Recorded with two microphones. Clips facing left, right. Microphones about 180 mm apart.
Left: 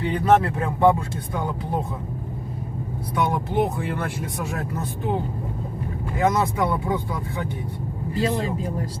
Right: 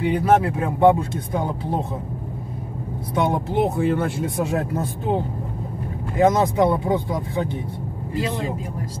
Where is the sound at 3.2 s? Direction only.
25° right (ahead or behind).